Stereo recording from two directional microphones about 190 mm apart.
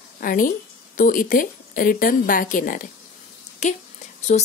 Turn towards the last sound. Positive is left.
turn(degrees=40)  # may be behind; listen again after turning